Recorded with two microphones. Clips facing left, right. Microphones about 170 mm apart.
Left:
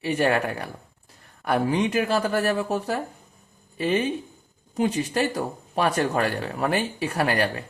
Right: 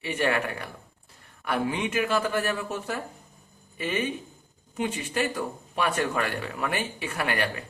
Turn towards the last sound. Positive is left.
turn(degrees=35)  # may be behind; listen again after turning